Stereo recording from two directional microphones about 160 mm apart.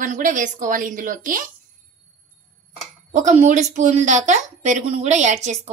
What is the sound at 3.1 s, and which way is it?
A woman's voice, 45° right (ahead or behind).